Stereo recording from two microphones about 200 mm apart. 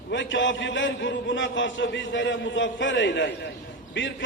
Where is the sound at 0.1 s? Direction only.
65° left (ahead or behind).